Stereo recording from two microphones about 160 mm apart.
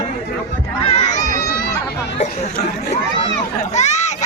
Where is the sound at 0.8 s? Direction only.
40° left (ahead or behind).